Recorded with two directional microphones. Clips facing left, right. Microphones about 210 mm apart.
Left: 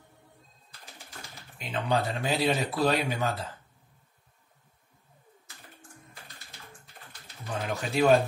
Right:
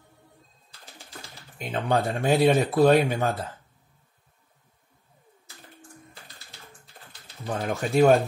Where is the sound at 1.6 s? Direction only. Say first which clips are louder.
Right 3 dB; 50° right (ahead or behind).